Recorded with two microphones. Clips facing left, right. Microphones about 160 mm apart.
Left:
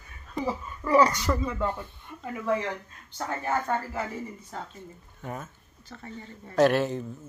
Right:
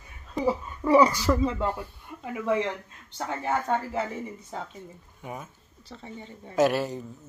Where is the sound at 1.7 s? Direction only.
5° right (ahead or behind).